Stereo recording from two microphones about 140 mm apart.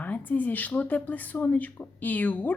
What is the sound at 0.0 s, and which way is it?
Speech, 10° left (ahead or behind).